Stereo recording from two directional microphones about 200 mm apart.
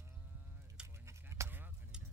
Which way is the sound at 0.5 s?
10° right (ahead or behind).